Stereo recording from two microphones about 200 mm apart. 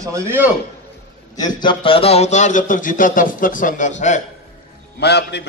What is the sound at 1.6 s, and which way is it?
Speech, 25° left (ahead or behind).